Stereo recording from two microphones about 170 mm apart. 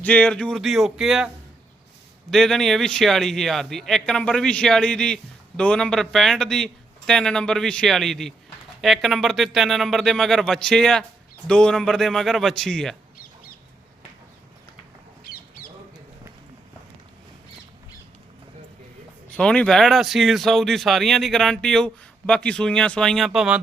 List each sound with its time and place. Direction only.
0.0 s a man's voice: 10° left (ahead or behind)
2.3 s a man's voice: centre (ahead or behind)
15.2 s squawk: 60° left (ahead or behind)
19.3 s a man's voice: 5° left (ahead or behind)